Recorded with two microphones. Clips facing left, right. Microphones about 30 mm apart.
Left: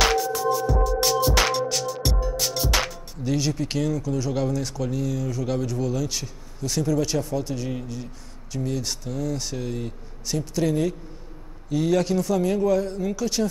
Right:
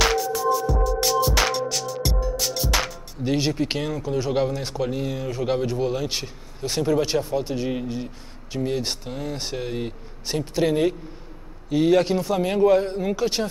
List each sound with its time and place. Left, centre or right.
0.0 s music: centre
3.3 s speech: right